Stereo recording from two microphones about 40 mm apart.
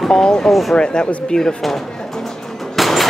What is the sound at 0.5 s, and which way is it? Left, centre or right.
Speech, centre.